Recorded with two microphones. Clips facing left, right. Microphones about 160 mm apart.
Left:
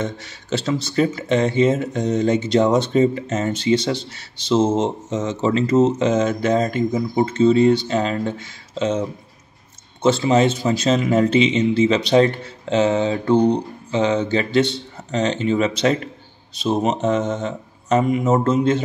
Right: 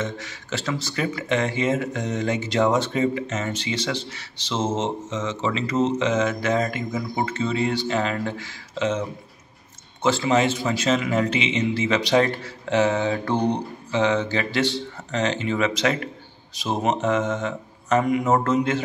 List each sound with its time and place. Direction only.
0.0 s speech: 30° left (ahead or behind)
5.1 s speech: 45° left (ahead or behind)
6.2 s speech: 30° left (ahead or behind)
10.0 s speech: 30° left (ahead or behind)